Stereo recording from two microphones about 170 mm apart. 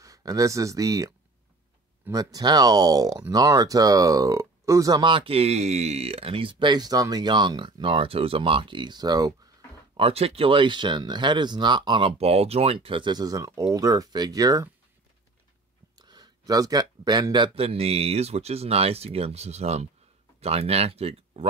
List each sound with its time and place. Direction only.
0.0 s speech: 20° right (ahead or behind)
9.9 s speech: 35° right (ahead or behind)
16.0 s speech: 25° right (ahead or behind)